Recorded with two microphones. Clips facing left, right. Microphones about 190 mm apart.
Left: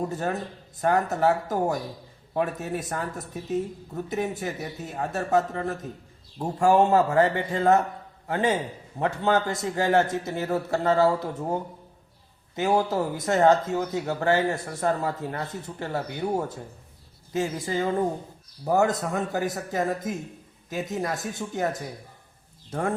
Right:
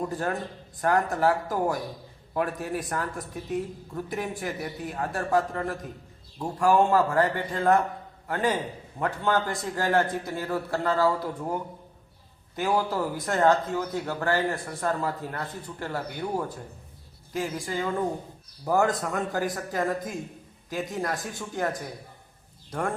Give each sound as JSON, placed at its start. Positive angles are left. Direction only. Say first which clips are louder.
{"t": 0.1, "sound": "speech", "louder": "left 1 dB", "side_deg": 20}